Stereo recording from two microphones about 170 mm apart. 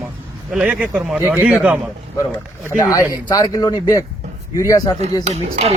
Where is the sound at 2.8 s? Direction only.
20° left (ahead or behind).